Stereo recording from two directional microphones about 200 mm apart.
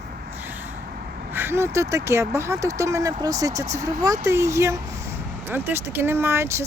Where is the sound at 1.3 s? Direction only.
10° right (ahead or behind).